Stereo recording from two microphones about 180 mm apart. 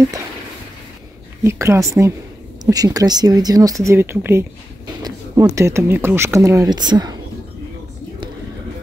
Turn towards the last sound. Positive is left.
turn(degrees=-25)  # may be behind; listen again after turning